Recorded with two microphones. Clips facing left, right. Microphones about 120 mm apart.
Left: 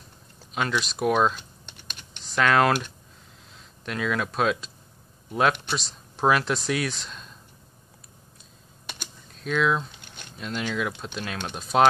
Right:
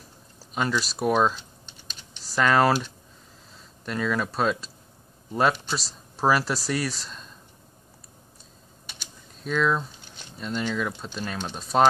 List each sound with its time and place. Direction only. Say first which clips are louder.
0.4 s speech: right 1 dB; 5° right (ahead or behind)
1.7 s computer keyboard: left 2 dB; 65° left (ahead or behind)
2.2 s speech: even; 5° right (ahead or behind)
3.8 s speech: right 1 dB; centre (ahead or behind)
9.4 s speech: even; centre (ahead or behind)
9.8 s squish: even; 65° left (ahead or behind)
10.3 s speech: right 1 dB; 5° left (ahead or behind)